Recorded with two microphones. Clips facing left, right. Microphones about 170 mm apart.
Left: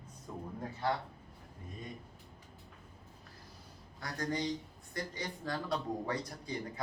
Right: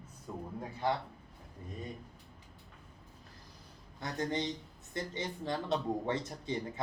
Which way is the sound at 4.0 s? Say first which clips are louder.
Right 1 dB; 20° right (ahead or behind).